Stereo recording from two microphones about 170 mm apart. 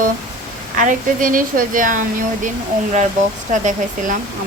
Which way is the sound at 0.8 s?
50° right (ahead or behind).